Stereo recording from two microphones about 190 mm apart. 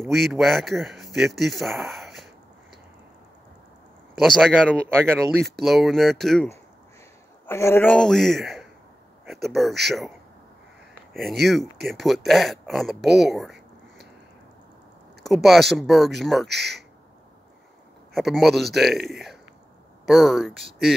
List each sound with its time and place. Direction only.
0.1 s speech: centre (ahead or behind)
4.2 s speech: centre (ahead or behind)
4.8 s speech: 10° right (ahead or behind)
5.4 s speech: centre (ahead or behind)
7.4 s speech: 15° left (ahead or behind)
11.2 s speech: centre (ahead or behind)
15.2 s speech: centre (ahead or behind)
16.4 s speech: 60° right (ahead or behind)
18.1 s speech: centre (ahead or behind)